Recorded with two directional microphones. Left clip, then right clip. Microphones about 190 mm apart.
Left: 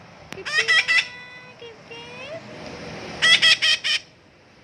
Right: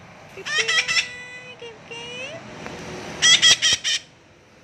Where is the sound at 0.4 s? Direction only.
45° left (ahead or behind).